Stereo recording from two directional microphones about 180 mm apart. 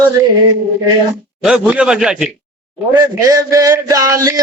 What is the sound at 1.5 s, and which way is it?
Speech, 5° right (ahead or behind).